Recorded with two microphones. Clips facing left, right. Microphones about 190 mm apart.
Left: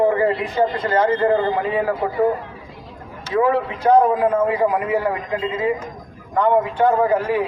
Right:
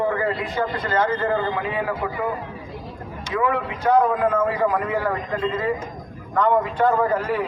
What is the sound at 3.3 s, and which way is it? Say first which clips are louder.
A man's voice: left 5 dB; 35° left (ahead or behind).